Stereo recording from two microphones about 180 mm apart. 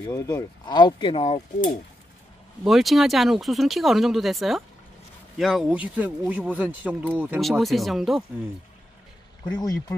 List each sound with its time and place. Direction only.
0.1 s speech: 15° left (ahead or behind); by 1.7 s 35° left (ahead or behind)
2.6 s speech: centre (ahead or behind)
9.6 s speech: 20° left (ahead or behind)